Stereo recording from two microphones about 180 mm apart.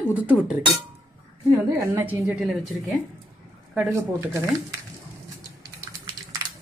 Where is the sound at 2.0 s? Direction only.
15° right (ahead or behind).